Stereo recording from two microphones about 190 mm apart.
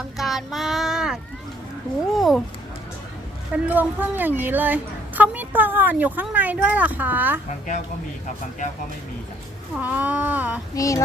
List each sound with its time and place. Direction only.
0.2 s child singing: centre (ahead or behind)
2.1 s speech: centre (ahead or behind)
3.5 s a woman's voice: 10° right (ahead or behind)
9.7 s a woman's voice: 10° right (ahead or behind)
10.8 s child singing: 15° left (ahead or behind)